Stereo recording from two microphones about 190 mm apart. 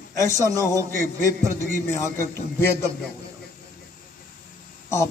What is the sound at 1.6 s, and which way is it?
Speech, 15° left (ahead or behind).